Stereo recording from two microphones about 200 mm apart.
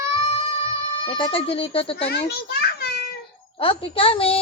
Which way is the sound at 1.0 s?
25° left (ahead or behind).